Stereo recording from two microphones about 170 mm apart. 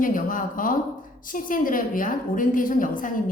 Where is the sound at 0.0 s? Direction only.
50° left (ahead or behind).